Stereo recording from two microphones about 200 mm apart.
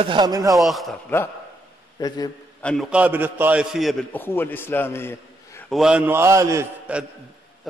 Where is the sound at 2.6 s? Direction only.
Centre (ahead or behind).